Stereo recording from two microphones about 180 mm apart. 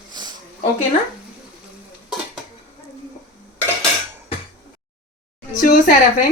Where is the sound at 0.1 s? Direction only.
25° right (ahead or behind).